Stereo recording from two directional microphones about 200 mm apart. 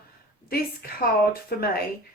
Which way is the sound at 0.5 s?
50° left (ahead or behind).